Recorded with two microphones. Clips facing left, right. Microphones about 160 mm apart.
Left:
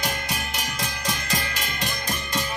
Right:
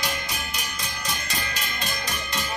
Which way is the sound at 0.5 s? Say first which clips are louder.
Left 4 dB; 90° left.